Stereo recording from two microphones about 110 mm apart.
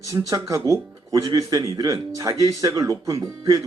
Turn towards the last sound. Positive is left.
turn(degrees=-30)  # may be behind; listen again after turning